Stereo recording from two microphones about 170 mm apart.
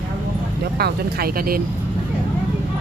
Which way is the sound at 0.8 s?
65° right (ahead or behind).